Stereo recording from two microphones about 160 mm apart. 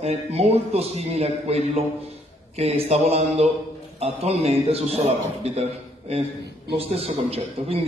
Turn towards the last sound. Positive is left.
turn(degrees=-40)  # may be behind; listen again after turning